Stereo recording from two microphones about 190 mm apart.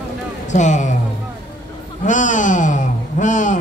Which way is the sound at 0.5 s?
40° left (ahead or behind).